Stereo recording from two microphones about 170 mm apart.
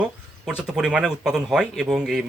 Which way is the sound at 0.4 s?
5° right (ahead or behind).